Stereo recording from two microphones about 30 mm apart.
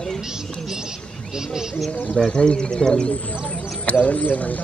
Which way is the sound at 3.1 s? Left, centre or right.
Left.